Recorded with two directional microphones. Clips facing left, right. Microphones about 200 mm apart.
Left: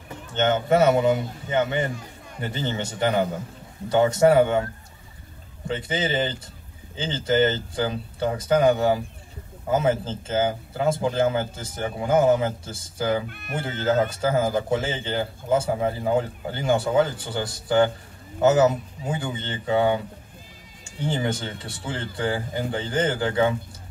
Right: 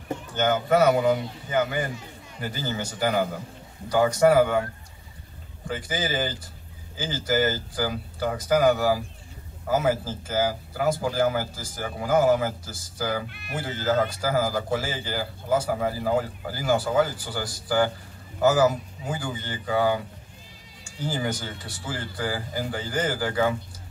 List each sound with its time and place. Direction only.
0.3 s speech: 25° left (ahead or behind)
5.7 s speech: 25° left (ahead or behind)
13.3 s speech: 50° left (ahead or behind)
13.6 s speech: 25° left (ahead or behind)
21.0 s speech: 25° left (ahead or behind)